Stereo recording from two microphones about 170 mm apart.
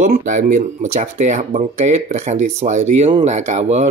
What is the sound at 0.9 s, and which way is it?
Speech, 45° right (ahead or behind).